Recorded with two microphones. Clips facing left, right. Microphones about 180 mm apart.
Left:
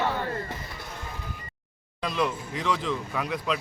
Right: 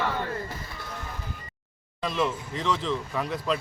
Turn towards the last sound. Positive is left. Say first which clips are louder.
# right 1 dB
turn(degrees=0)  # may be behind; listen again after turning